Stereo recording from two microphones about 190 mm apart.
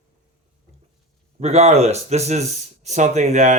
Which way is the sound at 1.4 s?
35° right (ahead or behind).